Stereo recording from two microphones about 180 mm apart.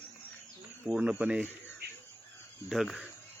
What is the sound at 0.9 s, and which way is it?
Speech, 5° right (ahead or behind).